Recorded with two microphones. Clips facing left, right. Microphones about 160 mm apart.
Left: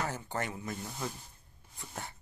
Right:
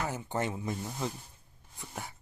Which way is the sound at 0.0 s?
15° right (ahead or behind).